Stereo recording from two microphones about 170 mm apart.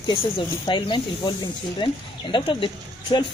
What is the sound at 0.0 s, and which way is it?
Speech, 30° left (ahead or behind).